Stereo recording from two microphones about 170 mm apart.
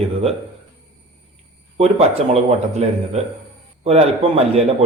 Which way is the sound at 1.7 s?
40° right (ahead or behind).